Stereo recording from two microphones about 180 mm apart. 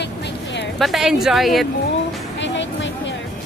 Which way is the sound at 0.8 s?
Centre (ahead or behind).